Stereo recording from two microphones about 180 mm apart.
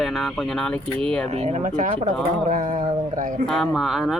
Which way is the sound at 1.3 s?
35° right (ahead or behind).